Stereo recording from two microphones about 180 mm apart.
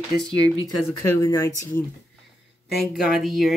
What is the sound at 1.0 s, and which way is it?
Speech, 15° left (ahead or behind).